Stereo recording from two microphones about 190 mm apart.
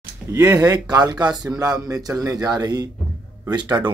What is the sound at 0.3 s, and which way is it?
Speech, 15° right (ahead or behind).